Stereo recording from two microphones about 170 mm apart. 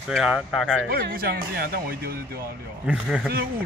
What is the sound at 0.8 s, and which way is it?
Speech, 60° right (ahead or behind).